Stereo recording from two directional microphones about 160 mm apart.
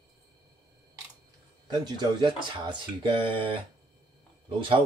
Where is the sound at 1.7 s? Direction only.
25° right (ahead or behind).